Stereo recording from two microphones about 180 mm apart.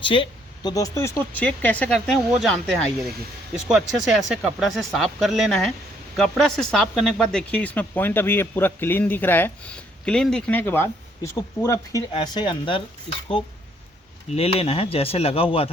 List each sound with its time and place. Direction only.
0.0 s speech: 30° left (ahead or behind)
14.3 s speech: 35° left (ahead or behind)